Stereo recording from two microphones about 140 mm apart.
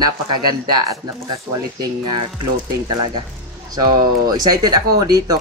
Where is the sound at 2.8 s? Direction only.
35° right (ahead or behind).